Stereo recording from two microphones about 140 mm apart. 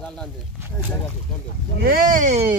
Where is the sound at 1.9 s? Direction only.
85° right; by 2.4 s 65° right (ahead or behind).